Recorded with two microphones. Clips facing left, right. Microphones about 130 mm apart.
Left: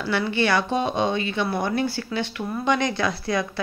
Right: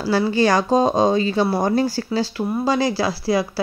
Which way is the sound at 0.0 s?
35° right (ahead or behind).